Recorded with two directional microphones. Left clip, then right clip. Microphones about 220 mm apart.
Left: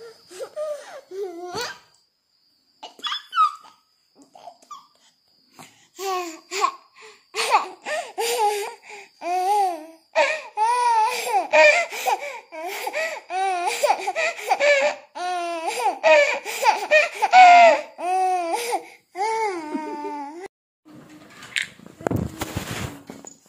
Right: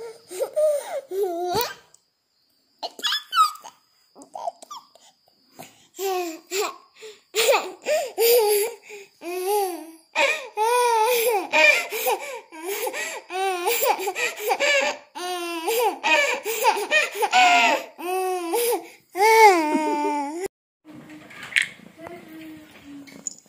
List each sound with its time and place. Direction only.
0.0 s wheeze: centre (ahead or behind)
1.4 s babbling: 15° right (ahead or behind)
2.8 s dog: 10° right (ahead or behind)
4.2 s a sound: 10° right (ahead or behind)
5.6 s laughter: 15° left (ahead or behind)
8.9 s baby cry: 20° left (ahead or behind)
19.1 s baby cry: 30° right (ahead or behind)
19.7 s baby cry: 20° right (ahead or behind)
21.5 s a sound: 5° right (ahead or behind)